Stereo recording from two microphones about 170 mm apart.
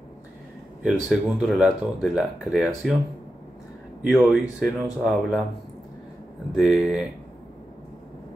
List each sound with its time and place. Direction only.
0.8 s speech: centre (ahead or behind)
4.1 s speech: centre (ahead or behind)
6.5 s speech: centre (ahead or behind)